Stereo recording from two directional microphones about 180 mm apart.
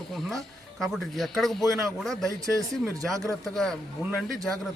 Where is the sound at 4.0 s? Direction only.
15° right (ahead or behind).